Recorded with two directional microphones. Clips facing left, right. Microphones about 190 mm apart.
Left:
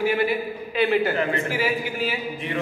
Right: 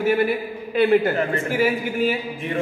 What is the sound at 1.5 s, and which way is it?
A man's voice, 50° right (ahead or behind).